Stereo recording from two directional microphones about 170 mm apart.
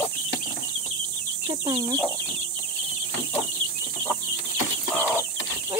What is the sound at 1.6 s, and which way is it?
Speech, 30° right (ahead or behind).